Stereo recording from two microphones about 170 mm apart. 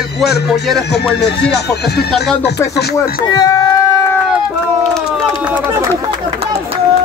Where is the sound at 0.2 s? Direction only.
75° left (ahead or behind).